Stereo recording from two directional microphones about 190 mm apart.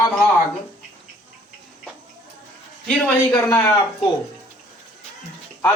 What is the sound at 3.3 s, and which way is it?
Speech, 10° left (ahead or behind).